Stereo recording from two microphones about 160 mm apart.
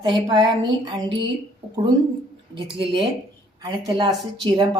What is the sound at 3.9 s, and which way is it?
Speech, 30° right (ahead or behind).